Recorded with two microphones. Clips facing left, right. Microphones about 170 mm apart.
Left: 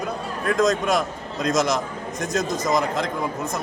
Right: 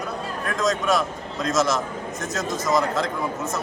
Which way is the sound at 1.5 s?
15° left (ahead or behind).